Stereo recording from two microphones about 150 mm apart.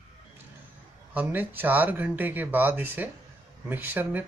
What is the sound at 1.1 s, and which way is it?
Speech, 10° right (ahead or behind).